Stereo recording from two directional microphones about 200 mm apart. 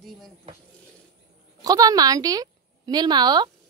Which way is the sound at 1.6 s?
20° right (ahead or behind).